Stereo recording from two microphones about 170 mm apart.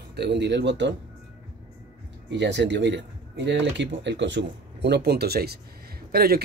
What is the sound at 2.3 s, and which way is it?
Speech, 90° right.